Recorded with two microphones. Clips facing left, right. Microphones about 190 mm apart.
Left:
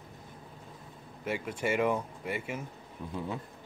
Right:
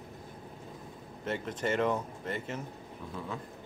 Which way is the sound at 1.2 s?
10° left (ahead or behind).